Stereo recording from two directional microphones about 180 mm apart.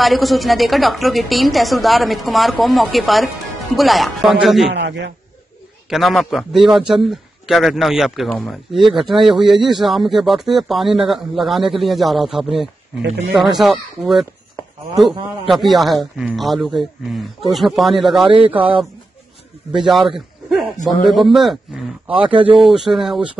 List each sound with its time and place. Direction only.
0.0 s a woman's voice: centre (ahead or behind)
4.6 s a man's voice: 75° right (ahead or behind)
5.9 s a woman's voice: centre (ahead or behind)
15.5 s a woman's voice: centre (ahead or behind)
19.7 s a woman's voice: centre (ahead or behind)
22.3 s speech: 30° right (ahead or behind)
22.7 s a woman's voice: centre (ahead or behind)